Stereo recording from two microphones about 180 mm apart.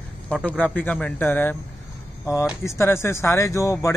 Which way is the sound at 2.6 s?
15° left (ahead or behind).